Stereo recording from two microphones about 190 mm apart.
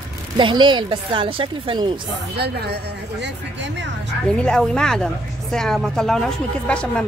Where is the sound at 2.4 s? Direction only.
60° right (ahead or behind).